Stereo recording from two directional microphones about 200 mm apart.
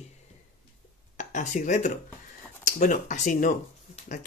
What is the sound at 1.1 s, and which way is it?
Speech, 40° left (ahead or behind).